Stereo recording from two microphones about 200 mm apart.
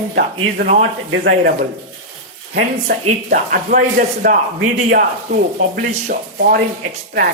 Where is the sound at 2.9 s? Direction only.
40° right (ahead or behind).